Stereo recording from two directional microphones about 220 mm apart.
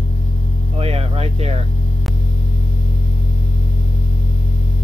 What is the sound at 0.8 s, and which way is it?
Vehicle, 25° right (ahead or behind).